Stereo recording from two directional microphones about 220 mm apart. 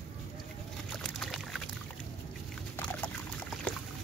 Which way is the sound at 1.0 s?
5° left (ahead or behind).